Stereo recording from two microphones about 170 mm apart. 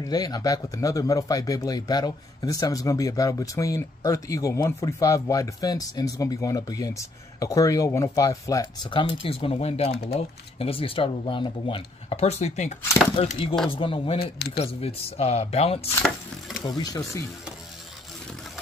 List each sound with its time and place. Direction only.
0.0 s speech: 20° left (ahead or behind)
9.0 s speech: 30° left (ahead or behind)
14.2 s speech: 70° left (ahead or behind)
14.6 s speech: 35° left (ahead or behind)
16.6 s speech: 25° left (ahead or behind)